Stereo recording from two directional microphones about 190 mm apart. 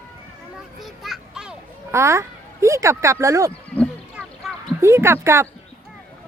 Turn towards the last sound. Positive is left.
turn(degrees=-15)  # may be behind; listen again after turning